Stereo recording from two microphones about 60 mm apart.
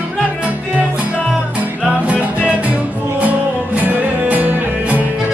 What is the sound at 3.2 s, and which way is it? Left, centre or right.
Music, right.